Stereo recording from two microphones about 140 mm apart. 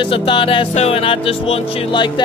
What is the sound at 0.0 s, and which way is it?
Speech, 40° left (ahead or behind).